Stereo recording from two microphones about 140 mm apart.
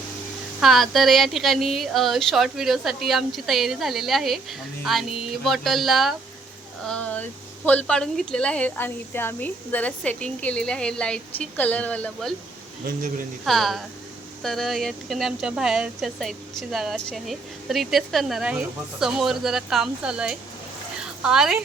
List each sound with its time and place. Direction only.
0.6 s speech: centre (ahead or behind)
12.8 s speech: 75° right (ahead or behind)
13.4 s speech: centre (ahead or behind)